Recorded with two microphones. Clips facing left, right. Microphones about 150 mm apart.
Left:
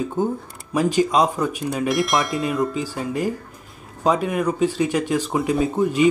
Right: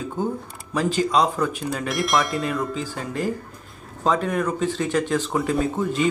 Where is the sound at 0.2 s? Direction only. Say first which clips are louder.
Left 3 dB; 20° left (ahead or behind).